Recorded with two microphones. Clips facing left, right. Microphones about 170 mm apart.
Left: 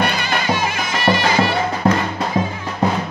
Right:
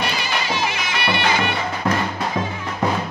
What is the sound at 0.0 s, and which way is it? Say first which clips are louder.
Music: left 4 dB; 50° left (ahead or behind).